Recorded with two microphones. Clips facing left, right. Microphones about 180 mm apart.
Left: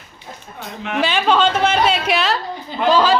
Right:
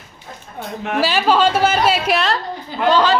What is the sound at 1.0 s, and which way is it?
A woman's voice, 5° right (ahead or behind).